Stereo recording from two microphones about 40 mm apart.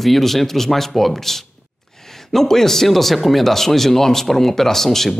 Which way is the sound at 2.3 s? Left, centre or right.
Centre.